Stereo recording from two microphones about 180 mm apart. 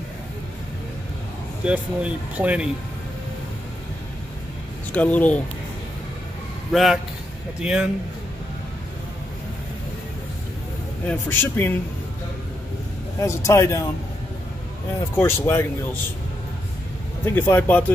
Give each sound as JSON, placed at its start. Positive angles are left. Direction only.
{"t": 1.6, "sound": "speech", "side_deg": -5}
{"t": 4.9, "sound": "speech", "side_deg": 10}
{"t": 6.7, "sound": "speech", "side_deg": 0}
{"t": 11.1, "sound": "speech", "side_deg": 10}
{"t": 13.2, "sound": "speech", "side_deg": 15}
{"t": 15.1, "sound": "speech", "side_deg": 10}
{"t": 17.2, "sound": "speech", "side_deg": 10}